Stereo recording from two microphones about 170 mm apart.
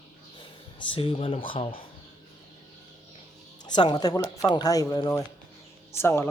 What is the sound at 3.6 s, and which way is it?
Speech, 25° left (ahead or behind).